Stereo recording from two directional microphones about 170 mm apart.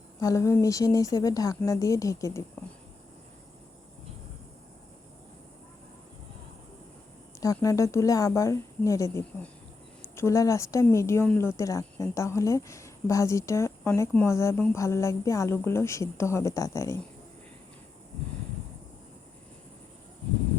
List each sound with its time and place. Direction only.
0.2 s speech: 20° left (ahead or behind)
7.4 s speech: 20° left (ahead or behind)